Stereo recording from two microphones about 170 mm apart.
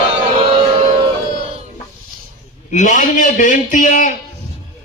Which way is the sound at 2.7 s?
50° left (ahead or behind).